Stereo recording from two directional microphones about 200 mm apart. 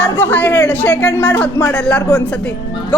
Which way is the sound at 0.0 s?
10° left (ahead or behind).